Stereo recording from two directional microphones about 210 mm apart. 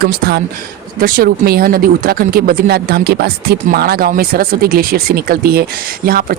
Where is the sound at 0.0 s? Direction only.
50° right (ahead or behind).